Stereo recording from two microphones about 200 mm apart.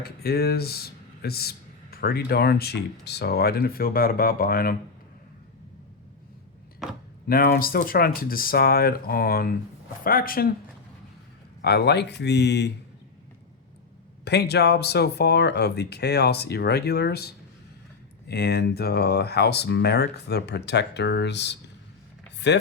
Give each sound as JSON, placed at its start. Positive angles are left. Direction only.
{"t": 0.0, "sound": "speech", "side_deg": 50}
{"t": 6.8, "sound": "a sound", "side_deg": 0}
{"t": 7.3, "sound": "speech", "side_deg": 50}
{"t": 11.6, "sound": "speech", "side_deg": 55}
{"t": 14.3, "sound": "speech", "side_deg": 55}